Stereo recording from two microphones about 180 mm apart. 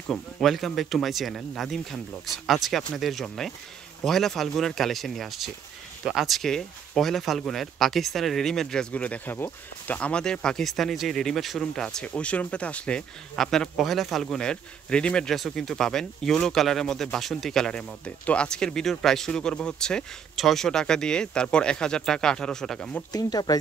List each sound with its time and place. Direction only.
0.1 s speech: centre (ahead or behind)
23.1 s speech: 20° left (ahead or behind)